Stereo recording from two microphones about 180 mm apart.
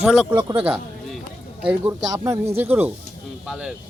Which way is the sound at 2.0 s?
20° right (ahead or behind).